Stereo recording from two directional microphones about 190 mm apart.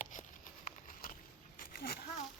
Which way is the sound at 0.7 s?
45° left (ahead or behind).